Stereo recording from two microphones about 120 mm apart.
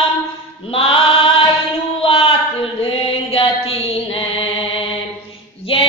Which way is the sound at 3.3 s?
50° left (ahead or behind).